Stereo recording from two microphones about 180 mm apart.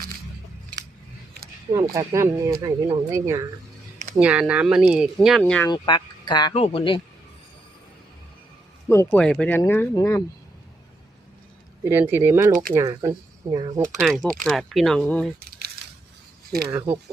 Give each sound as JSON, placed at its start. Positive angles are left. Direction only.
{"t": 1.7, "sound": "speech", "side_deg": -20}
{"t": 5.6, "sound": "speech", "side_deg": 25}
{"t": 8.9, "sound": "speech", "side_deg": 10}
{"t": 11.9, "sound": "speech", "side_deg": -10}
{"t": 14.0, "sound": "speech", "side_deg": 0}
{"t": 15.4, "sound": "a sound", "side_deg": -55}
{"t": 16.6, "sound": "speech", "side_deg": -15}